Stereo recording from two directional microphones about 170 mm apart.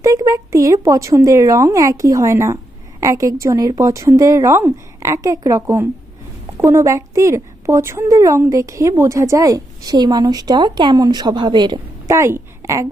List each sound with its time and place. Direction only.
0.0 s a woman's voice: 20° right (ahead or behind)
12.1 s a woman's voice: 15° right (ahead or behind)